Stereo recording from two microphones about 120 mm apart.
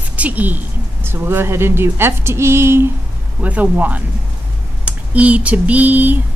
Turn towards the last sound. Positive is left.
turn(degrees=-15)  # may be behind; listen again after turning